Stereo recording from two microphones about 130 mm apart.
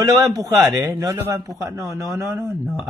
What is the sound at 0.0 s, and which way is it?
A man's voice, 30° right (ahead or behind).